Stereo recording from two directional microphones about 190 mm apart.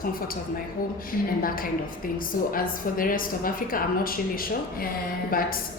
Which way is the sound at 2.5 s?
45° left (ahead or behind).